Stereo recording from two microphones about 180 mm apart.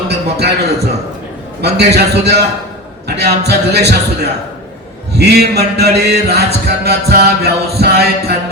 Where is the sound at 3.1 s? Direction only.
65° right (ahead or behind).